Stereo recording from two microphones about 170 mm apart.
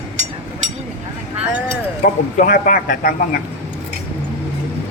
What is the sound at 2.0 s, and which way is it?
Speech, 50° left (ahead or behind).